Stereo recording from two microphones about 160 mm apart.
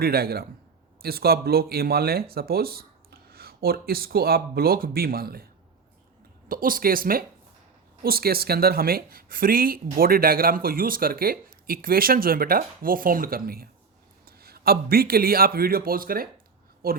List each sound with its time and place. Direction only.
0.0 s speech: 75° right (ahead or behind)
6.5 s a man's voice: 60° right (ahead or behind)